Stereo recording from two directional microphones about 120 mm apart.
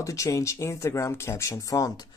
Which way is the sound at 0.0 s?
25° left (ahead or behind).